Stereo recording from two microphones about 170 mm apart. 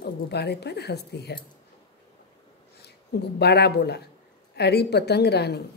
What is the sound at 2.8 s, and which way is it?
A woman's voice, 75° left (ahead or behind).